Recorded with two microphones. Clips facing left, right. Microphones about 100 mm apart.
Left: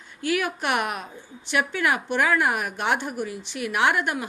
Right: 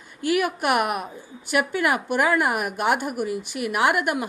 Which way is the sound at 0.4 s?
50° right (ahead or behind).